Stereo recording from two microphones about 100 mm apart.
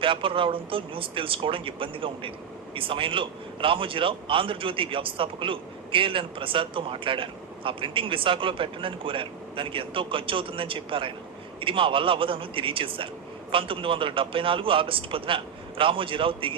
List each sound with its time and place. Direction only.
0.0 s a man's voice: 60° right (ahead or behind)